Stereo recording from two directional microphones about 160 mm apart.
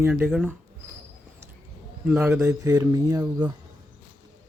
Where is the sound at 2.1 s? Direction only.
5° right (ahead or behind).